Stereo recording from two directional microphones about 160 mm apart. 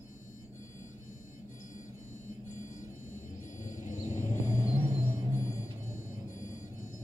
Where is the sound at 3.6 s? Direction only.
50° left (ahead or behind).